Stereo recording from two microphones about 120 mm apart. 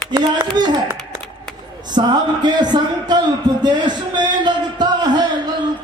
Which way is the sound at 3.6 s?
35° right (ahead or behind).